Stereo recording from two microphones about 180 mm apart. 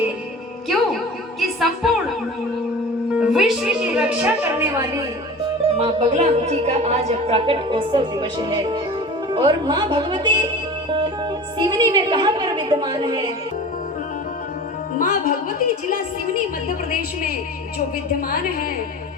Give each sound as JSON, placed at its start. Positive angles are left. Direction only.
{"t": 1.4, "sound": "a sound", "side_deg": 0}
{"t": 3.2, "sound": "music", "side_deg": -5}
{"t": 5.7, "sound": "a woman's voice", "side_deg": -35}
{"t": 11.5, "sound": "a woman's voice", "side_deg": -25}
{"t": 14.9, "sound": "a woman's voice", "side_deg": 50}
{"t": 18.3, "sound": "a woman's voice", "side_deg": 50}